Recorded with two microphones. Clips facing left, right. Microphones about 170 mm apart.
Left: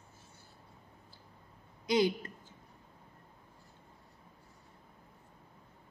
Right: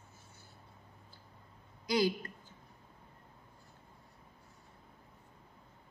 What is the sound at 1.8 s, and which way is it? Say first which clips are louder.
Speech: left 2 dB; 25° left (ahead or behind).